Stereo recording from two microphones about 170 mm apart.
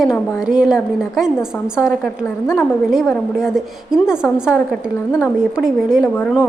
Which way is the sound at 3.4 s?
Centre (ahead or behind).